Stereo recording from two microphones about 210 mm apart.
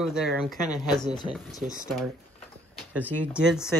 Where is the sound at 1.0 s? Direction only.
20° left (ahead or behind).